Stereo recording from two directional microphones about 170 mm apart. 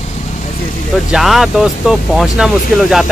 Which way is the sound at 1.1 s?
Centre (ahead or behind).